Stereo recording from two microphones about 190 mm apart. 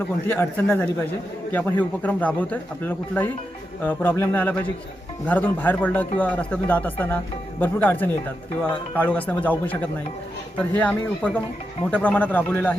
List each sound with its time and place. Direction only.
0.3 s a man's voice: 10° left (ahead or behind)